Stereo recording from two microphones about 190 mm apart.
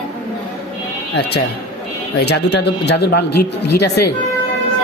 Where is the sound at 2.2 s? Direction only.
60° left (ahead or behind).